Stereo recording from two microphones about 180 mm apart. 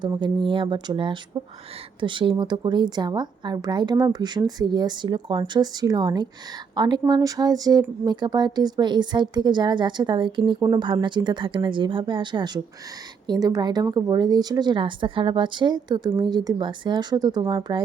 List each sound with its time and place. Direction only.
0.0 s speech: 25° right (ahead or behind)